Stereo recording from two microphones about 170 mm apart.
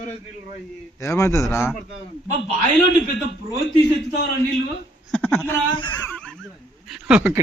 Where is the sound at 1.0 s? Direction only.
15° left (ahead or behind).